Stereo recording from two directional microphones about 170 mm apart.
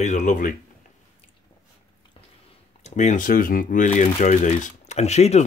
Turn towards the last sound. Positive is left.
turn(degrees=40)  # may be behind; listen again after turning